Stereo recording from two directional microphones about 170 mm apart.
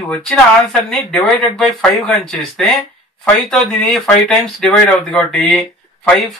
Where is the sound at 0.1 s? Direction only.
5° left (ahead or behind).